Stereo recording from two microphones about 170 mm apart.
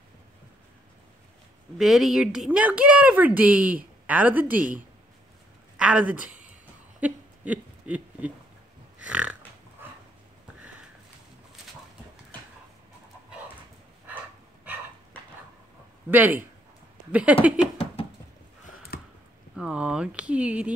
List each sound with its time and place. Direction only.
1.8 s speech: centre (ahead or behind)
5.8 s a woman's voice: 5° right (ahead or behind)
7.0 s a sound: 10° right (ahead or behind)
16.1 s speech: 10° right (ahead or behind)
18.9 s a sound: 65° left (ahead or behind)
19.5 s speech: 5° right (ahead or behind)